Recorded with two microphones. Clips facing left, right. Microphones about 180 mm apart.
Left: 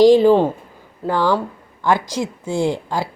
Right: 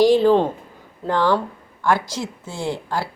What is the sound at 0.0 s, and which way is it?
A woman's voice, 15° left (ahead or behind).